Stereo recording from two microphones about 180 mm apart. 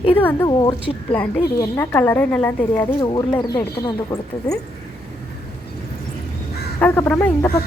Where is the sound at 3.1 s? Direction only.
20° left (ahead or behind).